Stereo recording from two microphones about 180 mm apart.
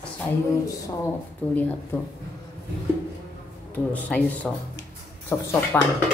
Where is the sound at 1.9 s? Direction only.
15° left (ahead or behind).